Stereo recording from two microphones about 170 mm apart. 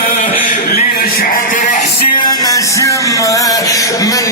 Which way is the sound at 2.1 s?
25° left (ahead or behind).